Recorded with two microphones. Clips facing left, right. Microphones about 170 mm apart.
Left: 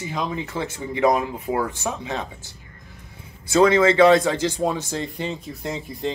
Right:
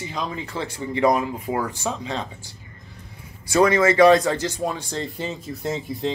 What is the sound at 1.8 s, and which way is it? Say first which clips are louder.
Speech: even; 15° left (ahead or behind).